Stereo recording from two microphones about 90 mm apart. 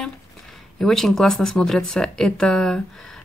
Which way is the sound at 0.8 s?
5° left (ahead or behind).